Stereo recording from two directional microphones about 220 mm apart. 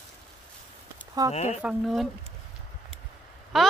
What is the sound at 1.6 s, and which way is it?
Speech, centre (ahead or behind).